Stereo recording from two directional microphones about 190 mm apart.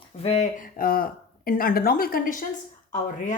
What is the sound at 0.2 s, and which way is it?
Speech, 35° left (ahead or behind).